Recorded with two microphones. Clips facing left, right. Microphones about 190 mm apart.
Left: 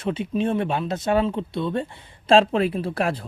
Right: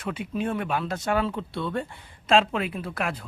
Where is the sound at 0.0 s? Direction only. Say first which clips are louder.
Left 5 dB; 25° left (ahead or behind).